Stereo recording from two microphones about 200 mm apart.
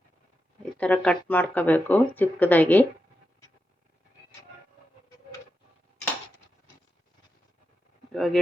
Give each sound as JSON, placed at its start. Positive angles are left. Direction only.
{"t": 0.8, "sound": "speech", "side_deg": 5}
{"t": 8.1, "sound": "speech", "side_deg": 0}